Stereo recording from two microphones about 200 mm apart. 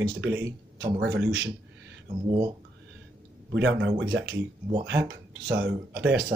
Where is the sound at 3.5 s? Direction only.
60° right (ahead or behind).